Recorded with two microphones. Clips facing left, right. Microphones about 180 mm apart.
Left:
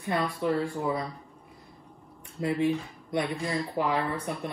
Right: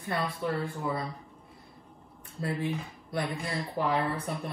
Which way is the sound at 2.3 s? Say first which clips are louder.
Left 6 dB; 20° left (ahead or behind).